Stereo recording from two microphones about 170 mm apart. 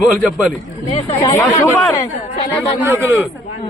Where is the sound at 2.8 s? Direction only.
15° right (ahead or behind).